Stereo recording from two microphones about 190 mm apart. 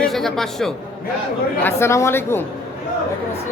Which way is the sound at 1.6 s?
15° left (ahead or behind).